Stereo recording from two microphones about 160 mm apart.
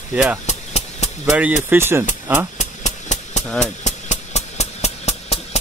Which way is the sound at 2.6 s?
50° left (ahead or behind).